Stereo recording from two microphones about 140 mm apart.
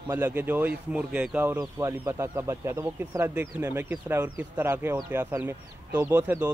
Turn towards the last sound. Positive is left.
turn(degrees=-15)  # may be behind; listen again after turning